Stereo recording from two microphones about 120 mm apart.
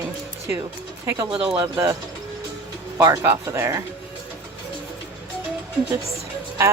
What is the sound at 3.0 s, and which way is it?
Speech, 25° right (ahead or behind).